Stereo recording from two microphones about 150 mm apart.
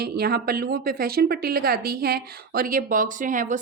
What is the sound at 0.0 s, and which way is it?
A woman's voice, 90° right.